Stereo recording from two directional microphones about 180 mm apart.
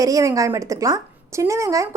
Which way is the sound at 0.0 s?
20° right (ahead or behind).